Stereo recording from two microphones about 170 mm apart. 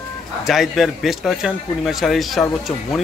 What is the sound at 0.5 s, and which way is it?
Speech, centre (ahead or behind).